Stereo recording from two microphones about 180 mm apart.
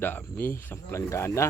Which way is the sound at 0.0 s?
10° left (ahead or behind).